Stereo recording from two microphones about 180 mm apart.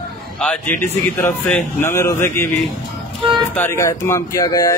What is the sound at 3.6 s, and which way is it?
A man's voice, 15° left (ahead or behind).